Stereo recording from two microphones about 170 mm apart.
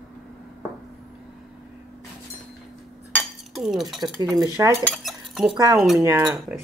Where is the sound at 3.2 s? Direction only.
Centre (ahead or behind).